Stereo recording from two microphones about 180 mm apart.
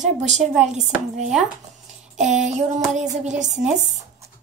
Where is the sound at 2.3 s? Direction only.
45° right (ahead or behind).